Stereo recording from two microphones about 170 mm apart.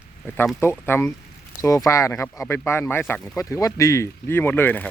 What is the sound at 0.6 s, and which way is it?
Speech, 15° left (ahead or behind).